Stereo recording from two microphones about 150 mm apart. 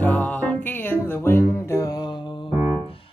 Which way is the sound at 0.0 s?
10° left (ahead or behind).